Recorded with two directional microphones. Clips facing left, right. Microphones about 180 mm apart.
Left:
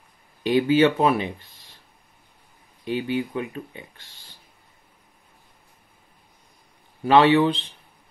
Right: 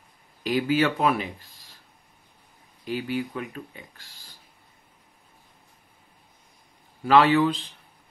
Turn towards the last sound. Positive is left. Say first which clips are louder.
# left 3 dB
turn(degrees=25)  # may be behind; listen again after turning